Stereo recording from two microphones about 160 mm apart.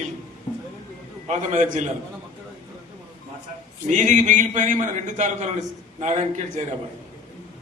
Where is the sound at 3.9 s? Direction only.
50° right (ahead or behind).